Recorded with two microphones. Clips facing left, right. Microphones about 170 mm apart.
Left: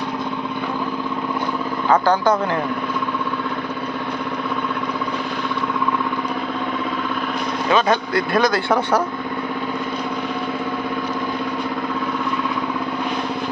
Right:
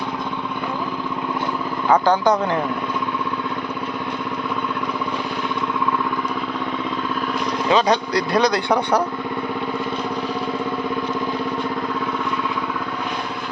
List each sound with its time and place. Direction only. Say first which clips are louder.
1.9 s speech: even; 20° right (ahead or behind)
7.7 s a man's voice: even; 20° right (ahead or behind)